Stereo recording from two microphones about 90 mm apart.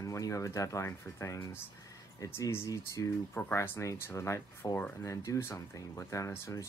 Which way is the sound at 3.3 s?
25° left (ahead or behind).